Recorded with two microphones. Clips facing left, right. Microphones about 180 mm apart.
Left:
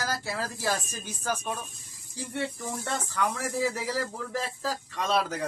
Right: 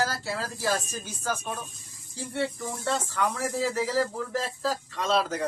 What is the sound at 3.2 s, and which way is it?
Speech, 15° left (ahead or behind).